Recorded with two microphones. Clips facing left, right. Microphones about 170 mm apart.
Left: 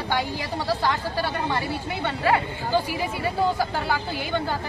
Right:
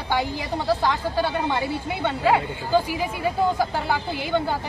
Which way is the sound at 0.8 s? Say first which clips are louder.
Right 2 dB; 15° right (ahead or behind).